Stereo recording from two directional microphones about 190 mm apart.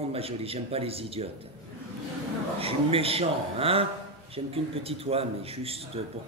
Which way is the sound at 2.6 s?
30° right (ahead or behind).